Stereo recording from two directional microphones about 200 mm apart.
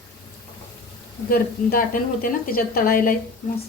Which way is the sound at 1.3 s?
45° left (ahead or behind).